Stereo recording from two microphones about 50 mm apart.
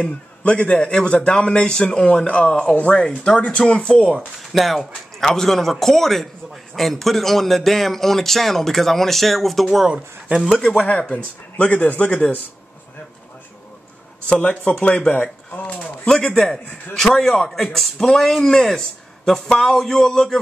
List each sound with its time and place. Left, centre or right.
0.0 s a man's voice: left
4.4 s a man's voice: centre
9.8 s speech: centre
10.8 s a man's voice: left
14.3 s a man's voice: left
15.6 s a sound: left
16.2 s a man's voice: left
16.9 s a man's voice: centre